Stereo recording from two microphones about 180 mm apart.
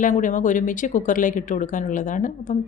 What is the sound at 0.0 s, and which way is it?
Speech, 45° left (ahead or behind).